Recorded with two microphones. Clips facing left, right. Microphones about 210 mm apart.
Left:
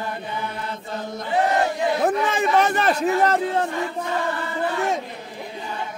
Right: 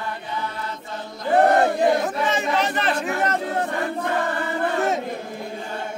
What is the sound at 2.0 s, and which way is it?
A man's voice, 55° left (ahead or behind).